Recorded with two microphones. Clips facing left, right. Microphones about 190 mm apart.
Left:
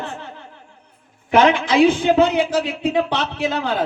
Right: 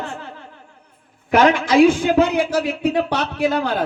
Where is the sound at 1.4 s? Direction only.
45° right (ahead or behind).